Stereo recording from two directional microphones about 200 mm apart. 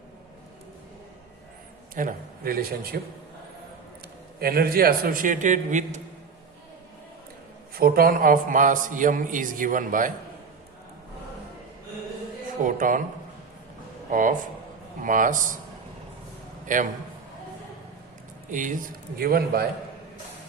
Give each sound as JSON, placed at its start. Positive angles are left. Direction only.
{"t": 2.0, "sound": "a man's voice", "side_deg": -45}
{"t": 4.4, "sound": "a man's voice", "side_deg": -50}
{"t": 7.8, "sound": "a man's voice", "side_deg": -50}
{"t": 12.6, "sound": "a man's voice", "side_deg": -40}
{"t": 14.1, "sound": "a man's voice", "side_deg": -40}
{"t": 16.7, "sound": "a man's voice", "side_deg": -40}
{"t": 18.5, "sound": "a man's voice", "side_deg": -40}